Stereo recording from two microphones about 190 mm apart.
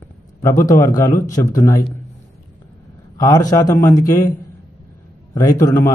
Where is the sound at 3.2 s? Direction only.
20° left (ahead or behind).